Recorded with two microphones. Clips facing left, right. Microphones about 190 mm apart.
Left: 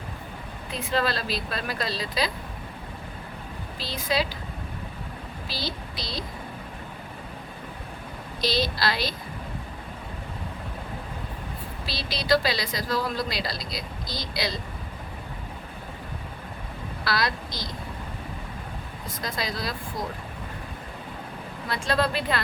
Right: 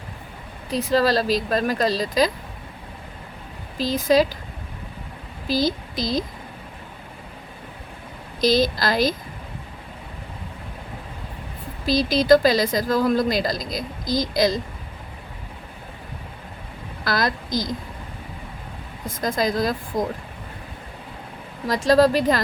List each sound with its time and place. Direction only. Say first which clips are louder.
0.7 s speech: right 8 dB; 40° right (ahead or behind)
3.8 s a woman's voice: right 10 dB; 45° right (ahead or behind)
5.5 s speech: right 13 dB; 45° right (ahead or behind)
8.4 s a woman's voice: right 7 dB; 45° right (ahead or behind)
11.9 s a woman's voice: right 9 dB; 45° right (ahead or behind)
17.0 s a woman's voice: right 4 dB; 45° right (ahead or behind)
19.0 s a woman's voice: right 9 dB; 45° right (ahead or behind)
19.9 s speech: right 9 dB; 90° right
21.7 s speech: right 10 dB; 40° right (ahead or behind)